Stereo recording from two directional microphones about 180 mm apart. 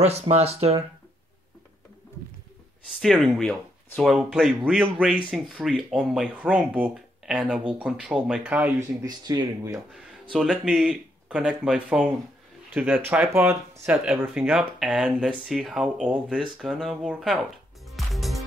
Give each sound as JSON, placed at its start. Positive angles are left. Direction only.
{"t": 0.0, "sound": "speech", "side_deg": -35}
{"t": 3.0, "sound": "speech", "side_deg": 0}
{"t": 9.0, "sound": "speech", "side_deg": -20}
{"t": 10.3, "sound": "speech", "side_deg": -5}
{"t": 17.9, "sound": "music", "side_deg": 0}